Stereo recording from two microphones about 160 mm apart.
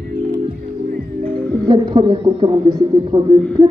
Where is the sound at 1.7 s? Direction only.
30° right (ahead or behind).